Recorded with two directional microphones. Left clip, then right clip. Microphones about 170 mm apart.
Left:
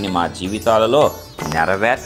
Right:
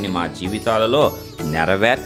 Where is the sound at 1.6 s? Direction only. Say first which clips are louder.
Even; 25° right (ahead or behind).